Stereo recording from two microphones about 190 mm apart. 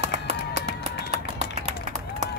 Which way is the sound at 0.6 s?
35° right (ahead or behind).